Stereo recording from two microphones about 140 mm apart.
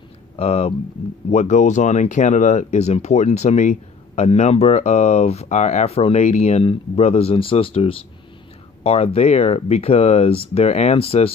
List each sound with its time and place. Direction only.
0.4 s speech: 45° left (ahead or behind)